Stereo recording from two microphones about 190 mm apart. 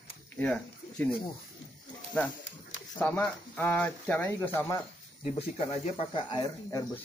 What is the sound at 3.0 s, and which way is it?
Speech, 10° left (ahead or behind).